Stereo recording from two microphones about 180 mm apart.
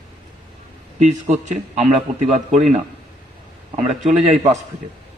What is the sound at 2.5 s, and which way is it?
Speech, 40° right (ahead or behind).